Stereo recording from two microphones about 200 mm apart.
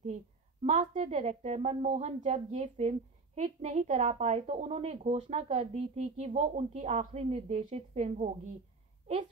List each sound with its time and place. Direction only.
0.7 s speech: 35° right (ahead or behind)